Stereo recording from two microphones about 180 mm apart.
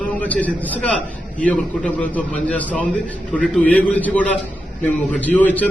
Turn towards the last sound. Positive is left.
turn(degrees=10)  # may be behind; listen again after turning